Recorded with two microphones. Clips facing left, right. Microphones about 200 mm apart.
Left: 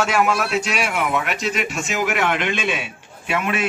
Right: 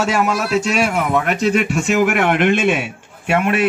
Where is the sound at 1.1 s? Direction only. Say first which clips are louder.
Right 7 dB; 45° right (ahead or behind).